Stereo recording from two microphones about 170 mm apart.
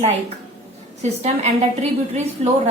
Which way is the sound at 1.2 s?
40° right (ahead or behind).